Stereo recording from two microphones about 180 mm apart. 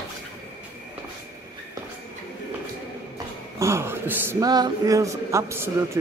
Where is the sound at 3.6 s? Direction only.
15° right (ahead or behind).